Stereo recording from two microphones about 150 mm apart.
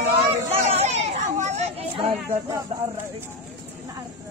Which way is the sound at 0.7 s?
45° right (ahead or behind).